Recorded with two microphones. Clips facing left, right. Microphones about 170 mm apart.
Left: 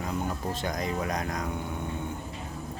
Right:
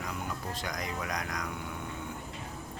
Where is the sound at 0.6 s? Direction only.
25° left (ahead or behind).